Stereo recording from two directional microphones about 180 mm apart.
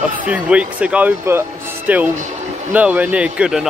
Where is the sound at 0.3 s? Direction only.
5° right (ahead or behind).